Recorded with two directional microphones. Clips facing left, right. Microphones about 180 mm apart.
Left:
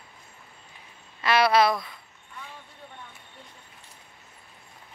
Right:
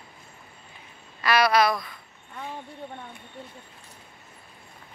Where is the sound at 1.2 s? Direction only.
25° left (ahead or behind).